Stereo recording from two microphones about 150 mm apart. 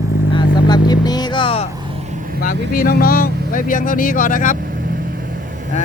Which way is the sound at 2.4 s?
70° left (ahead or behind).